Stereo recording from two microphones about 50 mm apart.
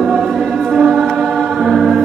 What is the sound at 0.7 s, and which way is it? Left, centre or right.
Choir, centre.